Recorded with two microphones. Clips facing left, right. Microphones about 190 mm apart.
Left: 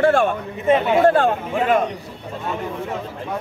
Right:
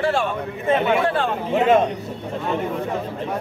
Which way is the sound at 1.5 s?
25° right (ahead or behind).